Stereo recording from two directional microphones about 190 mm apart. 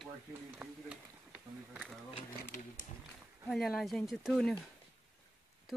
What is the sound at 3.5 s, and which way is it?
Speech, centre (ahead or behind).